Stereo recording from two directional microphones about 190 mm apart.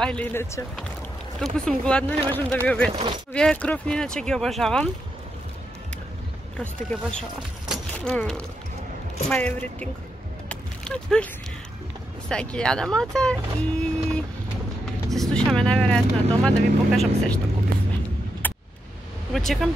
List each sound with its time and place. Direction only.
0.0 s speech: 5° left (ahead or behind)
1.4 s speech: centre (ahead or behind)
2.9 s speech: 25° right (ahead or behind)
3.3 s speech: 5° left (ahead or behind)
6.5 s speech: 5° left (ahead or behind)
10.5 s a sound: 5° left (ahead or behind)
12.3 s speech: 5° left (ahead or behind)
18.4 s a sound: 10° left (ahead or behind)
19.3 s speech: centre (ahead or behind)